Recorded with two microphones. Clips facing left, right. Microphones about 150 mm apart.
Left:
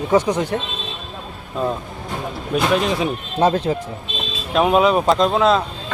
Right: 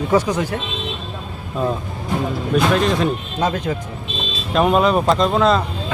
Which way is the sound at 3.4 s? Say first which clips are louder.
Left 6 dB; 30° left (ahead or behind).